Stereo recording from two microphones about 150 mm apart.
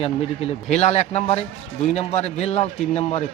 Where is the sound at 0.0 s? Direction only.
40° left (ahead or behind).